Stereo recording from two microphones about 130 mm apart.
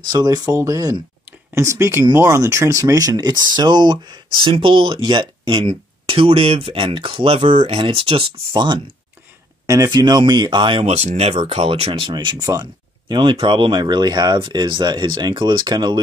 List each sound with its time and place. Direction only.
0.0 s speech: 30° right (ahead or behind)
9.7 s speech: 30° right (ahead or behind)
10.9 s speech: 55° right (ahead or behind); by 16.0 s 35° right (ahead or behind)